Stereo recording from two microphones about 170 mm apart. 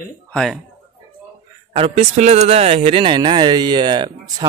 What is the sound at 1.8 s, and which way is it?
Speech, 40° right (ahead or behind).